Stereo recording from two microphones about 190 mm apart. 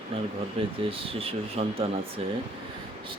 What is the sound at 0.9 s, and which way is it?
Speech, 30° right (ahead or behind).